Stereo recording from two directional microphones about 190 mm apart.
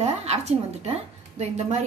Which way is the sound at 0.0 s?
35° right (ahead or behind).